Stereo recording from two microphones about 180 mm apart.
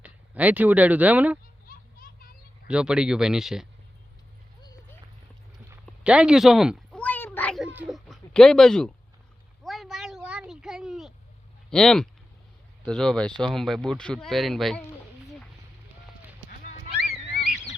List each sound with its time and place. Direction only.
0.0 s speech: 10° right (ahead or behind)
1.6 s children playing: 55° left (ahead or behind)
2.6 s speech: 5° right (ahead or behind)
5.8 s meow: 5° right (ahead or behind)
7.8 s a sound: centre (ahead or behind)
9.6 s cat: centre (ahead or behind)
11.7 s speech: 5° left (ahead or behind)
17.1 s a sound: 60° left (ahead or behind)